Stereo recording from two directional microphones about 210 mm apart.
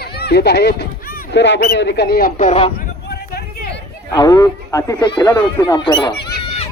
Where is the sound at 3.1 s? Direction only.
55° left (ahead or behind).